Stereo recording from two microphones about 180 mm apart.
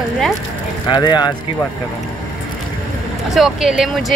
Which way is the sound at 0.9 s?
25° left (ahead or behind).